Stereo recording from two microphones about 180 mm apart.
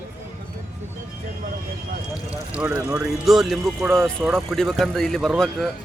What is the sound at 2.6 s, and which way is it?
Speech, 5° right (ahead or behind).